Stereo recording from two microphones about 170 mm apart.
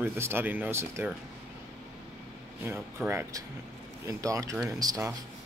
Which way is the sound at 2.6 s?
15° right (ahead or behind).